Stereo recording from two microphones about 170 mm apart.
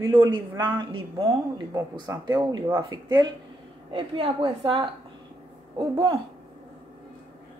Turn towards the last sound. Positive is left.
turn(degrees=-30)  # may be behind; listen again after turning